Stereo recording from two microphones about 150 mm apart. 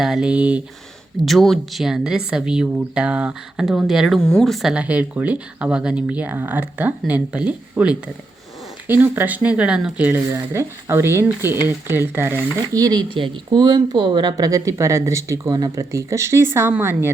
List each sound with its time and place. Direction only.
0.0 s speech: 5° right (ahead or behind)
10.3 s speech: 20° right (ahead or behind)